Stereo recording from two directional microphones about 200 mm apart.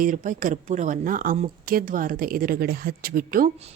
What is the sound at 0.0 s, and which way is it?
A woman's voice, 40° right (ahead or behind).